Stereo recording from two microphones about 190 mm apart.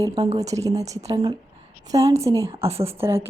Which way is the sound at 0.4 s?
15° right (ahead or behind).